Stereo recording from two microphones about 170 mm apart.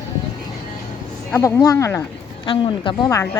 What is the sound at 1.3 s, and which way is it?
Speech, 15° left (ahead or behind).